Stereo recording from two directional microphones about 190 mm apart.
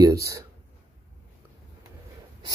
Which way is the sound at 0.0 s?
20° right (ahead or behind).